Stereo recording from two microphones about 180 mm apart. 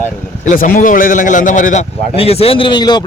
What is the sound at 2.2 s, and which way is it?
Speech, 35° left (ahead or behind).